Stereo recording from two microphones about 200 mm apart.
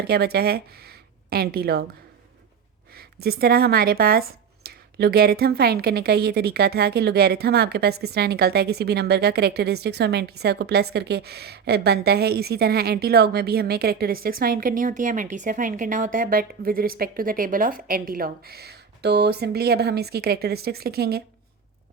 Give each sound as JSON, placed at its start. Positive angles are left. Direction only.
{"t": 0.0, "sound": "speech", "side_deg": -50}
{"t": 2.9, "sound": "a woman's voice", "side_deg": -50}